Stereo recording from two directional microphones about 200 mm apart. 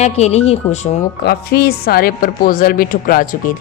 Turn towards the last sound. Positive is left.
turn(degrees=45)  # may be behind; listen again after turning